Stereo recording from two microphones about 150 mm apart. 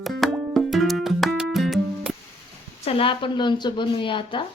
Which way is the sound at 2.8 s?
40° left (ahead or behind).